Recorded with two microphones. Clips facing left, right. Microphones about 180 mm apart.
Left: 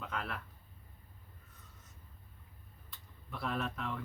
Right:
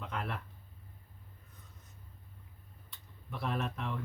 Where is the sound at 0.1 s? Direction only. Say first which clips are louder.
Right 2 dB; centre (ahead or behind).